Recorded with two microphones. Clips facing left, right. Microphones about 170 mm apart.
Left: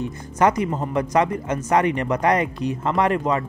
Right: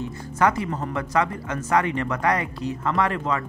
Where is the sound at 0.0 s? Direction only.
20° left (ahead or behind).